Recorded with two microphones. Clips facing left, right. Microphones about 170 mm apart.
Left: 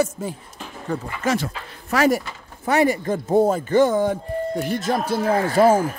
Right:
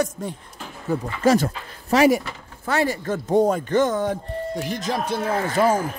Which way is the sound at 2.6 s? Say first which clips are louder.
Left 4 dB; 15° left (ahead or behind).